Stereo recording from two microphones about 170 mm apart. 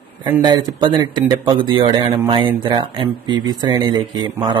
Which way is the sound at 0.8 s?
25° right (ahead or behind).